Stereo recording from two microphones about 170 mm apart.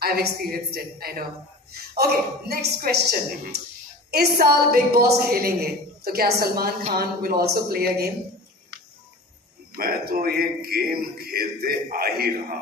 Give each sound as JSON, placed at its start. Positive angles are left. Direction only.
{"t": 0.0, "sound": "a man's voice", "side_deg": -65}
{"t": 9.8, "sound": "a man's voice", "side_deg": -65}